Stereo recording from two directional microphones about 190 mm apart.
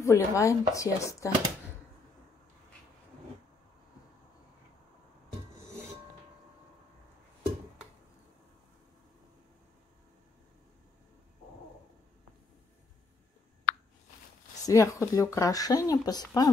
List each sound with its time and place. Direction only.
0.0 s speech: 15° left (ahead or behind)
14.7 s speech: 15° left (ahead or behind)